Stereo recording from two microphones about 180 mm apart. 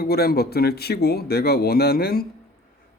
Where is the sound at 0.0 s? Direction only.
60° left (ahead or behind).